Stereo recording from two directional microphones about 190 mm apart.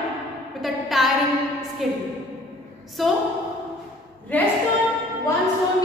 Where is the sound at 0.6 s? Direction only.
Centre (ahead or behind).